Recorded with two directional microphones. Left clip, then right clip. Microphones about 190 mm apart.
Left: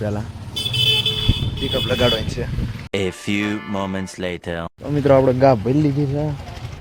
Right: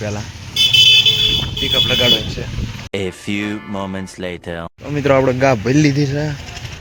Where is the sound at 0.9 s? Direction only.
60° left (ahead or behind).